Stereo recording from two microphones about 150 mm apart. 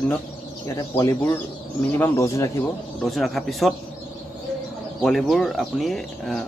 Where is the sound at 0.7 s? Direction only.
20° left (ahead or behind).